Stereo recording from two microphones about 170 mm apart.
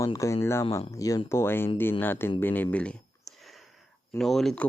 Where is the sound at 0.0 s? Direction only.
20° left (ahead or behind).